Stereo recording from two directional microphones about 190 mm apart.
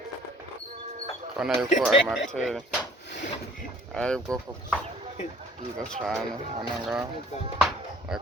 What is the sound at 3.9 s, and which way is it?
Speech, 5° left (ahead or behind).